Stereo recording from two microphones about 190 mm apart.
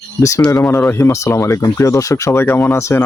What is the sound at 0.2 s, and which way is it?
Speech, 15° left (ahead or behind).